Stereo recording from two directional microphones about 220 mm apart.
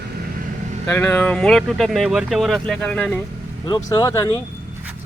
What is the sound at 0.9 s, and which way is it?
Speech, 10° left (ahead or behind).